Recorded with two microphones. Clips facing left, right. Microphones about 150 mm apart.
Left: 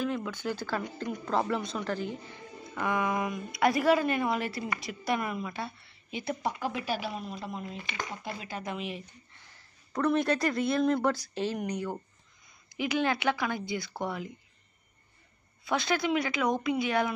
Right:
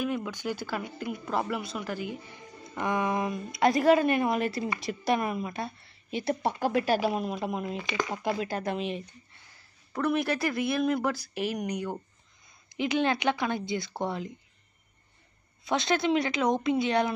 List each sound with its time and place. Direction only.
0.0 s a woman's voice: 15° right (ahead or behind)
6.7 s speech: 45° right (ahead or behind)
7.1 s speech: 65° right (ahead or behind)
7.6 s speech: 90° right
8.7 s a woman's voice: 25° right (ahead or behind)
9.9 s a woman's voice: 5° right (ahead or behind); by 14.3 s 25° right (ahead or behind)
15.6 s a woman's voice: 20° right (ahead or behind)